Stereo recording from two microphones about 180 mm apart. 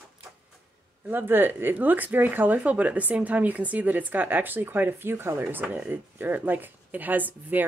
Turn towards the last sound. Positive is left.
turn(degrees=-10)  # may be behind; listen again after turning